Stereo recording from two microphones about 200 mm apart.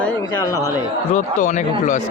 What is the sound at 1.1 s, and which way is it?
Speech, 40° left (ahead or behind).